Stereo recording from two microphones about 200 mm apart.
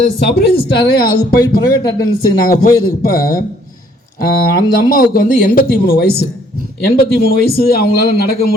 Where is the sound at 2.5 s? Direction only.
45° left (ahead or behind).